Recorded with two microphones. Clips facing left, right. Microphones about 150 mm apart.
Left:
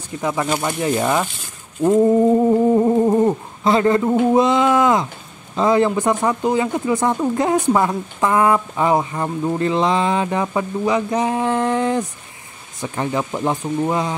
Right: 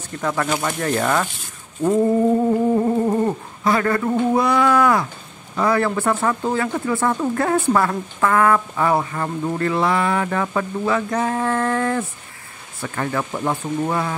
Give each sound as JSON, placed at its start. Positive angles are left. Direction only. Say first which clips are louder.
{"t": 0.1, "sound": "speech", "louder": "left 1 dB", "side_deg": 15}